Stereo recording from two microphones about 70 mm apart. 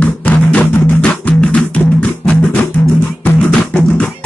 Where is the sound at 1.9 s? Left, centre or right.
Centre.